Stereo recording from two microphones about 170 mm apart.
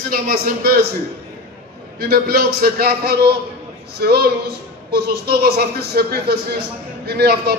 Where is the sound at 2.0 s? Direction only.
65° right (ahead or behind).